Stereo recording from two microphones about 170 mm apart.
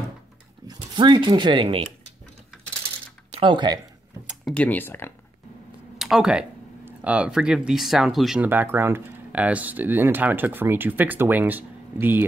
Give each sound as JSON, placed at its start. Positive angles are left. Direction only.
{"t": 0.7, "sound": "speech", "side_deg": -25}
{"t": 3.3, "sound": "speech", "side_deg": -30}
{"t": 4.6, "sound": "speech", "side_deg": 10}
{"t": 5.9, "sound": "speech", "side_deg": 0}